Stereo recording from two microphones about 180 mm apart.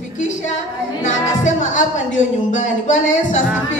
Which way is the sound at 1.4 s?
40° left (ahead or behind).